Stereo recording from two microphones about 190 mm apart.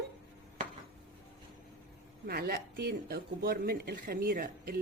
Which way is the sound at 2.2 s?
55° right (ahead or behind).